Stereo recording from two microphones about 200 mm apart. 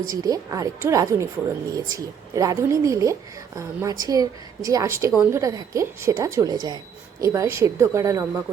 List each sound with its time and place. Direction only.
0.1 s speech: 20° right (ahead or behind)